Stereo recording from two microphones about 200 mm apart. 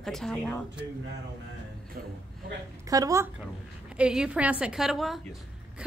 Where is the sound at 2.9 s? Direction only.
15° right (ahead or behind).